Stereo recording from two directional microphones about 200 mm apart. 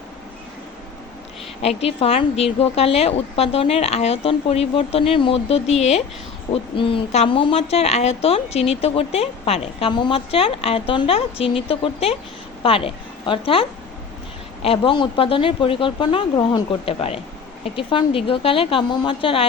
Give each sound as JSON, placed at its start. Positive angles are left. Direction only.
{"t": 1.6, "sound": "a woman's voice", "side_deg": 30}